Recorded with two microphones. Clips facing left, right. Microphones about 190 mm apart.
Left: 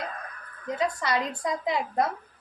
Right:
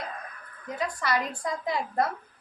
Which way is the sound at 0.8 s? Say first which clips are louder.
Left 1 dB; 20° left (ahead or behind).